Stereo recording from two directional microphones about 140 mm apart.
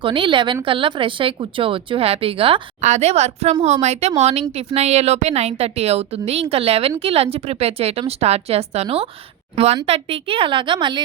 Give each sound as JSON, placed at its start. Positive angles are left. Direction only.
{"t": 0.0, "sound": "a woman's voice", "side_deg": -35}
{"t": 2.8, "sound": "a woman's voice", "side_deg": -55}